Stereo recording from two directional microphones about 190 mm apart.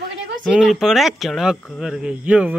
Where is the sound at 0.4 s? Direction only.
Centre (ahead or behind).